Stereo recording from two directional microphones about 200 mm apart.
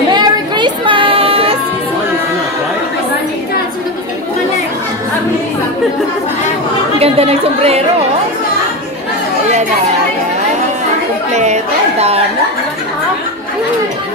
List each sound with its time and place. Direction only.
0.1 s music: 20° right (ahead or behind)
7.0 s speech: 30° right (ahead or behind)
11.3 s a sound: 35° right (ahead or behind)